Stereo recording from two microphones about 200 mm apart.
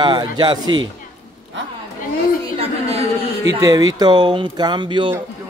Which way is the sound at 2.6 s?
30° right (ahead or behind).